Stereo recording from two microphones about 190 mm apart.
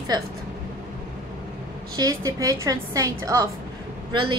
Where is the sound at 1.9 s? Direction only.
20° right (ahead or behind).